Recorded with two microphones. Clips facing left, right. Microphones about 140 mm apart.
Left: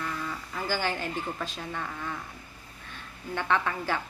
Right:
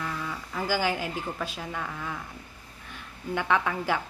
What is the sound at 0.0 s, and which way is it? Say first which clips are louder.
Speech: right 1 dB; 5° right (ahead or behind).